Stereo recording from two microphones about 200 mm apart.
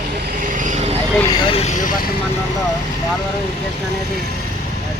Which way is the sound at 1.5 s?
35° left (ahead or behind).